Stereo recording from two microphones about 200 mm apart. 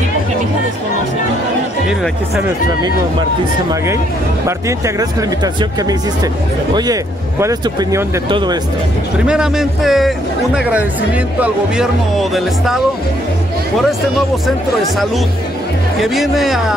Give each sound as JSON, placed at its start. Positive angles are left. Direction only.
{"t": 4.5, "sound": "speech", "side_deg": -15}
{"t": 9.2, "sound": "a man's voice", "side_deg": -5}
{"t": 16.0, "sound": "a man's voice", "side_deg": 0}